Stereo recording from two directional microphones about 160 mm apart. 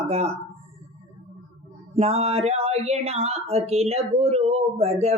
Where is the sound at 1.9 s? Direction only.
40° right (ahead or behind).